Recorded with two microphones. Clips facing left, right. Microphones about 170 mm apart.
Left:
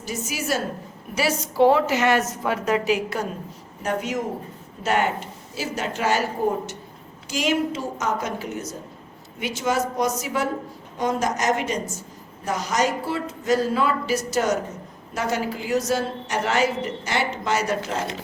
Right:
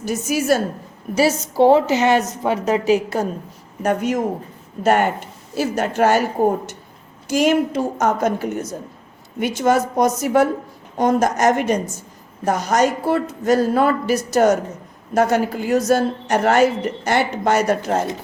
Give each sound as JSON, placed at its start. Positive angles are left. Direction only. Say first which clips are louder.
{"t": 0.1, "sound": "a woman's voice", "louder": "right 8 dB", "side_deg": -50}
{"t": 1.1, "sound": "a woman's voice", "louder": "right 6 dB", "side_deg": -35}
{"t": 3.8, "sound": "a woman's voice", "louder": "right 6 dB", "side_deg": -55}
{"t": 7.3, "sound": "a woman's voice", "louder": "right 6 dB", "side_deg": -55}